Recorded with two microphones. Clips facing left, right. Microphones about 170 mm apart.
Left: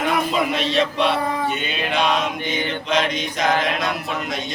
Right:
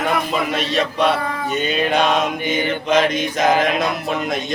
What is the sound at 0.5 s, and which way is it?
Mantra, 45° right (ahead or behind).